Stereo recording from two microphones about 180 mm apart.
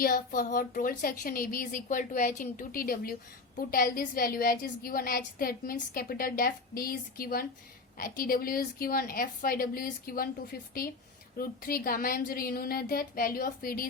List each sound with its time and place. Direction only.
0.0 s speech: 50° left (ahead or behind)